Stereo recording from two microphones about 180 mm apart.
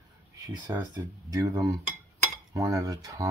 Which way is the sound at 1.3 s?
20° right (ahead or behind).